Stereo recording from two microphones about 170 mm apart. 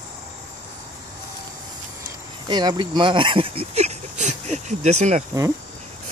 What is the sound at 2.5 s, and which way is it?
Speech, 25° right (ahead or behind).